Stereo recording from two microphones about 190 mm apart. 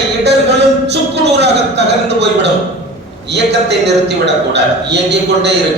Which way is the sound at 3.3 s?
60° right (ahead or behind).